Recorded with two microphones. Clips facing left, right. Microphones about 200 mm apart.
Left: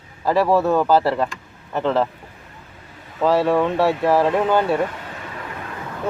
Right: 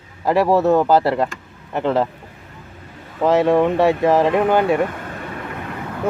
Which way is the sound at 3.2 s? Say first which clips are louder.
Right 2 dB; 20° right (ahead or behind).